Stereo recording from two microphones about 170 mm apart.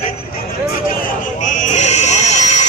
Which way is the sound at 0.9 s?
50° left (ahead or behind).